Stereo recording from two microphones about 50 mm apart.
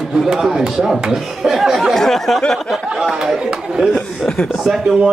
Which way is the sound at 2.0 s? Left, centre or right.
Centre.